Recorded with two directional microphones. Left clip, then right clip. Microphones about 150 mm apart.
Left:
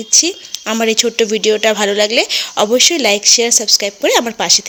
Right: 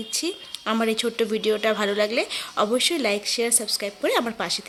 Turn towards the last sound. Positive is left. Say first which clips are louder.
# left 11 dB
turn(degrees=30)  # may be behind; listen again after turning